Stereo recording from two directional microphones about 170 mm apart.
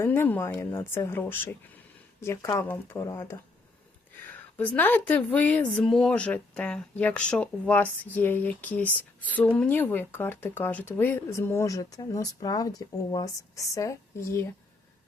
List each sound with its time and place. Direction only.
0.0 s a woman's voice: 10° left (ahead or behind)